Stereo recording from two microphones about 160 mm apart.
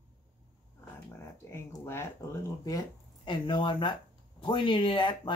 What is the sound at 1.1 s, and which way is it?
Speech, 15° left (ahead or behind).